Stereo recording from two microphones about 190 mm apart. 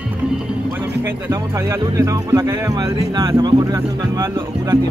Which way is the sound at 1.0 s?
15° right (ahead or behind).